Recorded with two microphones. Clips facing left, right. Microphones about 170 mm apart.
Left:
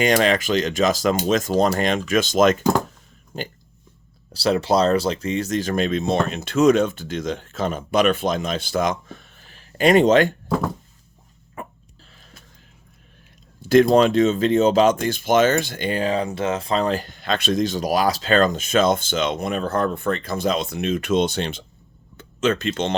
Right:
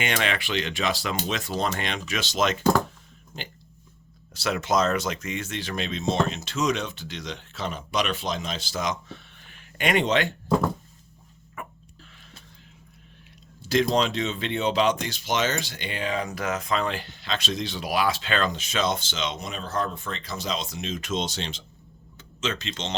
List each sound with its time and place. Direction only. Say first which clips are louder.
0.0 s speech: left 9 dB; 40° left (ahead or behind)
4.3 s speech: left 6 dB; 35° left (ahead or behind)
11.6 s a sound: left 4 dB; 35° left (ahead or behind)
13.6 s speech: left 9 dB; 55° left (ahead or behind)